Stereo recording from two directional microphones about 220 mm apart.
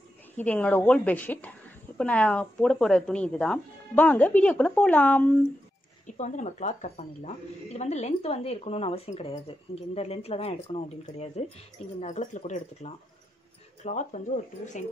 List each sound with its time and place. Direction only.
0.4 s a woman's voice: 5° left (ahead or behind)
6.0 s speech: 35° left (ahead or behind)